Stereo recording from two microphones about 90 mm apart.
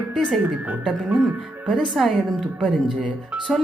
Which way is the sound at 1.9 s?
Centre (ahead or behind).